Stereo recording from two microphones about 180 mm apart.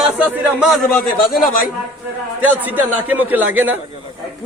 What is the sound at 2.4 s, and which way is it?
A man's voice, 10° right (ahead or behind).